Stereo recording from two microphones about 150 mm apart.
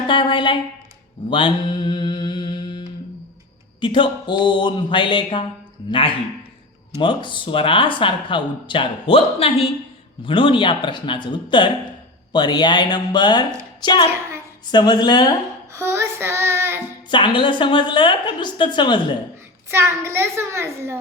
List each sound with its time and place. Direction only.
0.1 s speech: 30° left (ahead or behind)
1.3 s mantra: 35° left (ahead or behind)
3.8 s speech: 35° left (ahead or behind)
15.7 s child singing: 15° right (ahead or behind)
17.1 s speech: 30° left (ahead or behind)
19.7 s a child's voice: 15° right (ahead or behind)